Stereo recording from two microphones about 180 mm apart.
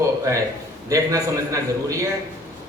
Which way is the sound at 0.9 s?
20° right (ahead or behind).